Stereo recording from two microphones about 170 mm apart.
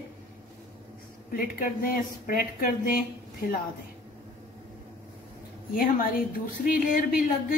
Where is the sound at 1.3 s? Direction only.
55° left (ahead or behind).